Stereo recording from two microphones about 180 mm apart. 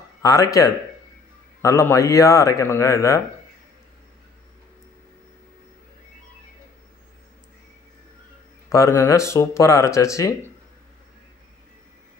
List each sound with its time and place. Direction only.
0.2 s speech: 20° left (ahead or behind)
8.6 s speech: 15° left (ahead or behind)